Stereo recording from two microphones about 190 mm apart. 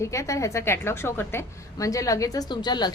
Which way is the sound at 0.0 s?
15° left (ahead or behind).